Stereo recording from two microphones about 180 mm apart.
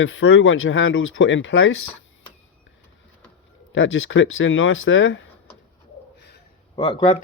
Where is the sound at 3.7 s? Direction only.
90° left.